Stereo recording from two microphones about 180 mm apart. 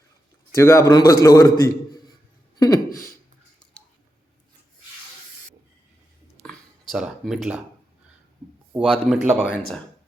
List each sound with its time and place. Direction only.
0.5 s a man's voice: 15° left (ahead or behind)
6.4 s a sound: 5° left (ahead or behind)
6.9 s speech: 5° right (ahead or behind)
8.7 s speech: 5° right (ahead or behind)